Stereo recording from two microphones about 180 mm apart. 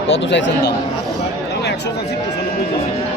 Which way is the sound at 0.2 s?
80° left.